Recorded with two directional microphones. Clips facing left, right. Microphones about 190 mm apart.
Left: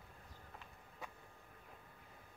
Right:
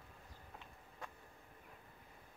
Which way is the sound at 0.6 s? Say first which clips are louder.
Even; 5° left (ahead or behind).